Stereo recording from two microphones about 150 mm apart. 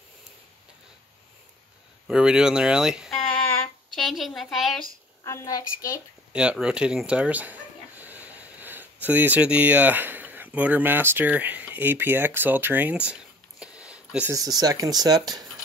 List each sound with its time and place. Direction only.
2.0 s speech: 5° right (ahead or behind)
3.4 s a sound: 5° left (ahead or behind)
5.2 s a woman's voice: 20° left (ahead or behind)
6.3 s speech: 5° right (ahead or behind)
14.3 s speech: 25° right (ahead or behind)